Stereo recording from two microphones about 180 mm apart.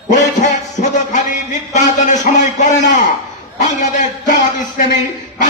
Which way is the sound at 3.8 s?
45° left (ahead or behind).